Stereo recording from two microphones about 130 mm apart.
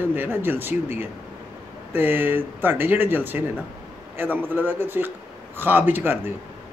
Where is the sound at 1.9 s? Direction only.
15° right (ahead or behind).